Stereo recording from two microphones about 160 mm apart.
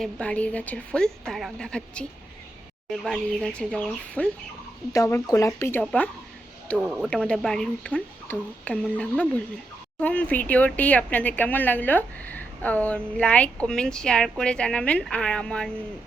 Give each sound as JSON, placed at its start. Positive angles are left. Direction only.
{"t": 0.0, "sound": "a woman's voice", "side_deg": 5}
{"t": 4.9, "sound": "speech", "side_deg": 20}
{"t": 5.8, "sound": "a woman's voice", "side_deg": 5}
{"t": 6.7, "sound": "speech", "side_deg": -5}
{"t": 7.1, "sound": "a woman's voice", "side_deg": 5}